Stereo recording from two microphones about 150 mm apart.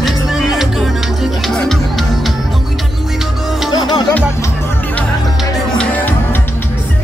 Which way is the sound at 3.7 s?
30° left (ahead or behind).